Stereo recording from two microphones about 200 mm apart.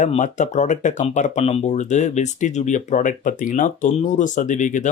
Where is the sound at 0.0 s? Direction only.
35° left (ahead or behind).